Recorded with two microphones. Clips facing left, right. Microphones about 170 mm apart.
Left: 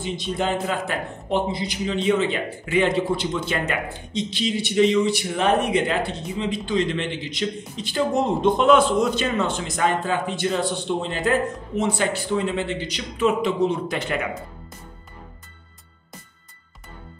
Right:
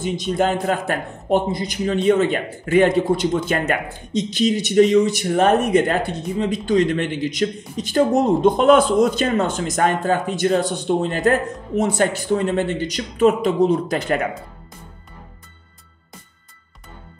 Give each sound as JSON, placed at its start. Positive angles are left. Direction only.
{"t": 0.0, "sound": "a man's voice", "side_deg": -45}